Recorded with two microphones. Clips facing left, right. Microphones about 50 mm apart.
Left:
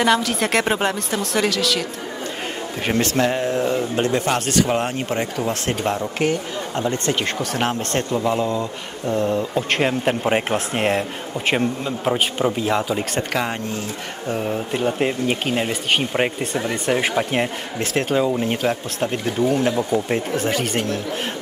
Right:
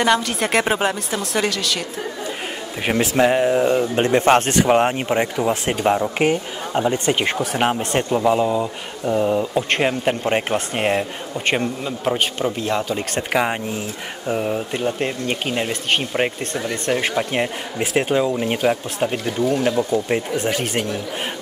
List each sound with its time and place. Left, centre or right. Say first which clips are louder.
0.0 s speech: even; centre
2.9 s speech: right 3 dB; centre
13.3 s speech: right 3 dB; centre
14.8 s speech: left 2 dB; centre
17.7 s speech: right 1 dB; centre
19.3 s speech: left 1 dB; centre